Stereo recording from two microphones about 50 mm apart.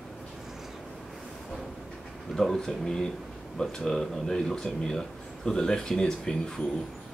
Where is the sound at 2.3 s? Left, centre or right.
Centre.